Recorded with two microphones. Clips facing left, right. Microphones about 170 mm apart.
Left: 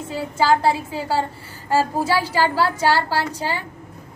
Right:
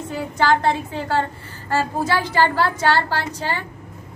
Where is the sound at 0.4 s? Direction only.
5° left (ahead or behind).